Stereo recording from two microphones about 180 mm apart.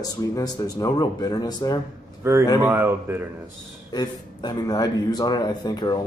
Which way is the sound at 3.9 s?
25° left (ahead or behind).